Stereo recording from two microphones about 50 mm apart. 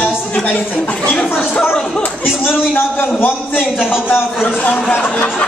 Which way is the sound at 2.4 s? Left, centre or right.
Left.